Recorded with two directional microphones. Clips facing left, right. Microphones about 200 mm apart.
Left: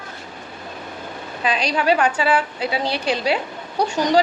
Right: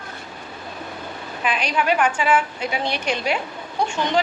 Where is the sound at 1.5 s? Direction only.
35° left (ahead or behind).